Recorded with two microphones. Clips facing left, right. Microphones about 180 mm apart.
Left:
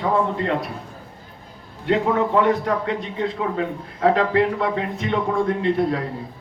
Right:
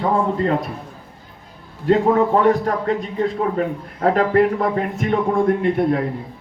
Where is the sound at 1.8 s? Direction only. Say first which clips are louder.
Right 4 dB; 40° right (ahead or behind).